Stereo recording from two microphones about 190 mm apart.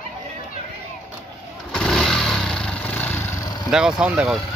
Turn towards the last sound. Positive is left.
turn(degrees=-5)  # may be behind; listen again after turning